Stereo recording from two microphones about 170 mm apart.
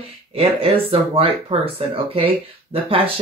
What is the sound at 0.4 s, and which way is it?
Speech, 35° right (ahead or behind).